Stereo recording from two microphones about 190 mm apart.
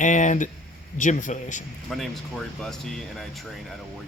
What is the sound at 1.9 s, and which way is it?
Speech, centre (ahead or behind).